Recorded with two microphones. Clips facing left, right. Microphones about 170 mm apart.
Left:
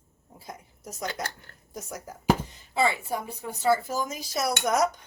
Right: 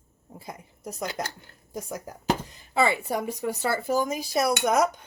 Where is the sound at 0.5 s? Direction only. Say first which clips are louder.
Right 5 dB; 60° right (ahead or behind).